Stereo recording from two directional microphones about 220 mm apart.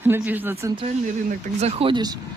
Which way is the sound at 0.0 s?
10° right (ahead or behind).